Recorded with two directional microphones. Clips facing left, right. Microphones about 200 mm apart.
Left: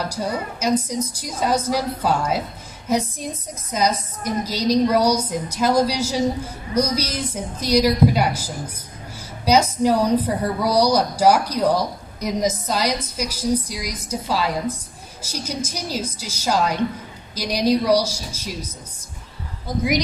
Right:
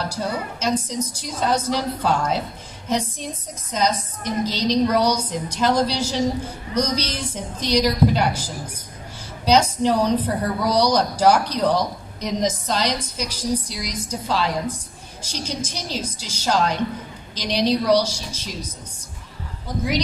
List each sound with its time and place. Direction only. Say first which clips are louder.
0.0 s a woman's voice: left 1 dB; 10° left (ahead or behind)
9.4 s a woman's voice: left 1 dB; 10° left (ahead or behind)